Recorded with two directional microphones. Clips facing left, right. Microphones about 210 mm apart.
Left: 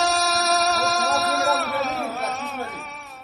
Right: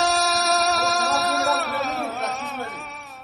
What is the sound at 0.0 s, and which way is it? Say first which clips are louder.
Music: even; centre (ahead or behind).